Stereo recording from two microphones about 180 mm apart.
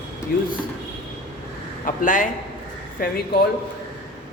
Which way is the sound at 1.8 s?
45° left (ahead or behind).